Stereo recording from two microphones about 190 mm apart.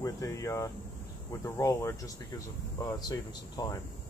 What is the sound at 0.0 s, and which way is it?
Speech, 15° left (ahead or behind).